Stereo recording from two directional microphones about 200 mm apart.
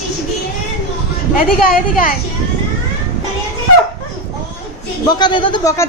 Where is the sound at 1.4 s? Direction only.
45° left (ahead or behind).